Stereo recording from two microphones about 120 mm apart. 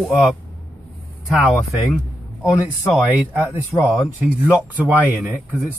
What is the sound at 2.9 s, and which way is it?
Speech, 10° right (ahead or behind).